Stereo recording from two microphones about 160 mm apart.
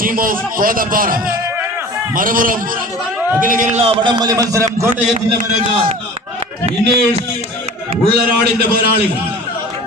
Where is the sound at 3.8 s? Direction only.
35° right (ahead or behind); by 4.9 s 20° right (ahead or behind).